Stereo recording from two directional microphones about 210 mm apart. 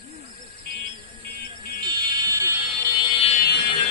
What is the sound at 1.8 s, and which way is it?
Fire alarm, 15° right (ahead or behind).